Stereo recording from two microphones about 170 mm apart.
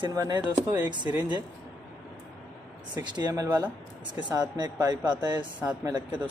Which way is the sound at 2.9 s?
25° right (ahead or behind).